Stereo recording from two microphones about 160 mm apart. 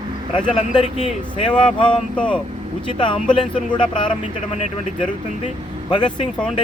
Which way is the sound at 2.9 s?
30° left (ahead or behind).